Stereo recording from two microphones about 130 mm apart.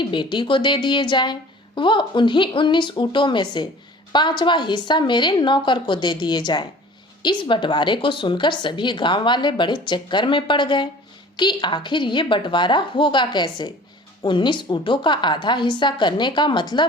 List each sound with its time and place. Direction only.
0.0 s a woman's voice: 40° left (ahead or behind)